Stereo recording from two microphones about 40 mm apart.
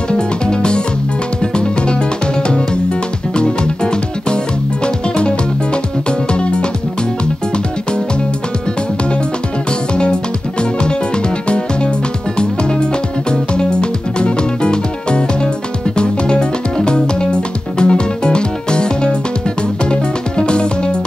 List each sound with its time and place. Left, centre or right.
0.1 s music: left
9.7 s music: left
13.3 s music: left